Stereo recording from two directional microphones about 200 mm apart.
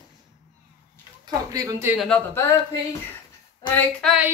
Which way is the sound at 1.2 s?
20° right (ahead or behind).